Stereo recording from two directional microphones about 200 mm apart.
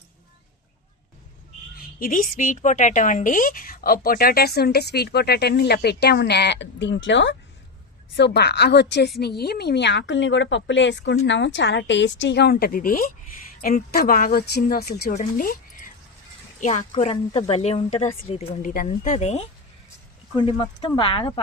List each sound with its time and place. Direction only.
1.7 s a woman's voice: 45° left (ahead or behind)
15.1 s speech: 40° left (ahead or behind)
20.3 s speech: 25° left (ahead or behind)